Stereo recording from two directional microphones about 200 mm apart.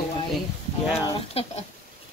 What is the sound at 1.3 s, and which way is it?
Speech, 30° left (ahead or behind).